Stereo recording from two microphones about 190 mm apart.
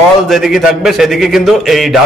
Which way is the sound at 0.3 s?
Centre (ahead or behind).